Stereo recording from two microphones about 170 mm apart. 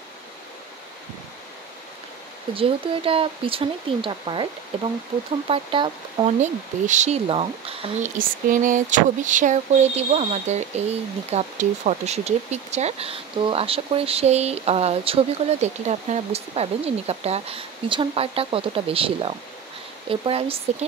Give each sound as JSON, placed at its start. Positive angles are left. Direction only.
{"t": 2.5, "sound": "speech", "side_deg": -30}
{"t": 5.5, "sound": "speech", "side_deg": -30}
{"t": 6.4, "sound": "speech", "side_deg": -45}
{"t": 8.0, "sound": "a sound", "side_deg": -50}
{"t": 11.3, "sound": "speech", "side_deg": -45}